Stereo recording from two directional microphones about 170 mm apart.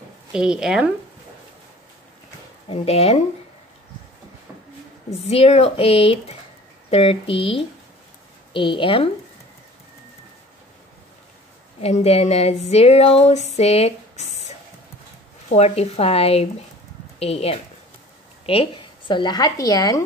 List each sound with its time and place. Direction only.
0.3 s speech: 5° right (ahead or behind)
2.7 s female singing: 35° left (ahead or behind)
5.1 s female singing: 35° left (ahead or behind)
11.8 s female singing: 40° left (ahead or behind)
15.5 s female singing: 40° left (ahead or behind)
18.4 s speech: 35° left (ahead or behind)